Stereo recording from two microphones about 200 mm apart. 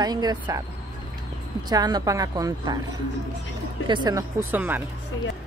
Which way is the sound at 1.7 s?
20° right (ahead or behind).